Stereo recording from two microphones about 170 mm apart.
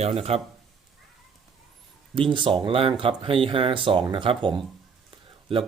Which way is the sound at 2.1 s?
30° right (ahead or behind).